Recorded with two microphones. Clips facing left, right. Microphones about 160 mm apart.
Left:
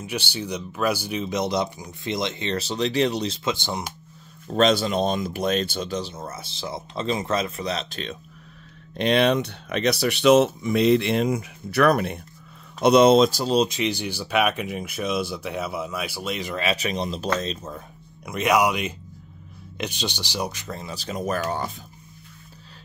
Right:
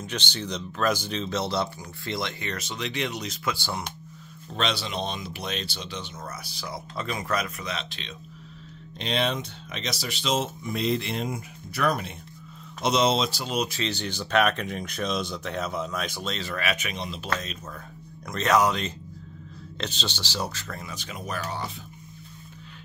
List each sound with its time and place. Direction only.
0.0 s speech: 10° left (ahead or behind)
4.6 s speech: 45° left (ahead or behind)
8.9 s speech: 60° left (ahead or behind)
13.5 s speech: 30° left (ahead or behind)
13.7 s speech: 10° left (ahead or behind); by 17.7 s 30° left (ahead or behind)
18.2 s speech: 10° left (ahead or behind); by 21.7 s 50° left (ahead or behind)